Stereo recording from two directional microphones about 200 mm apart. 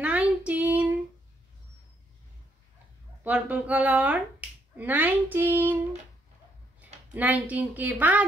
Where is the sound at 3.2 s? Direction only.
10° right (ahead or behind).